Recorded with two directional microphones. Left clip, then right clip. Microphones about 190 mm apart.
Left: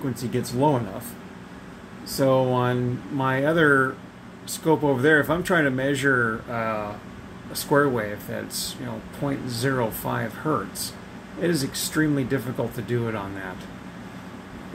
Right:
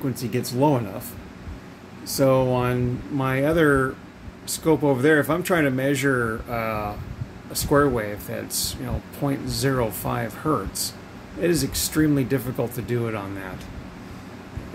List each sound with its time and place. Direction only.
0.1 s speech: 15° right (ahead or behind)
2.1 s speech: 10° right (ahead or behind)
9.2 s speech: 15° right (ahead or behind)